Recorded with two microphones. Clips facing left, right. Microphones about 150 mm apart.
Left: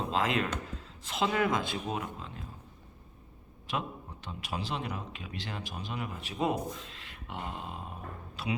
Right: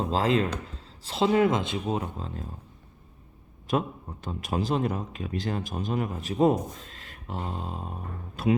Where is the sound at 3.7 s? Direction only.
45° right (ahead or behind).